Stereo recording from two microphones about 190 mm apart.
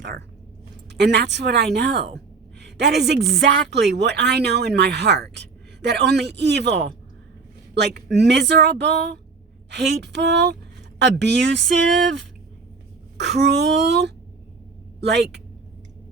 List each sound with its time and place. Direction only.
0.9 s a woman's voice: 65° right (ahead or behind)
8.1 s speech: 65° right (ahead or behind)
13.2 s speech: 65° right (ahead or behind)